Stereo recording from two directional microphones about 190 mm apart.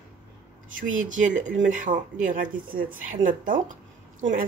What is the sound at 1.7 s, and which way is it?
Speech, 45° right (ahead or behind).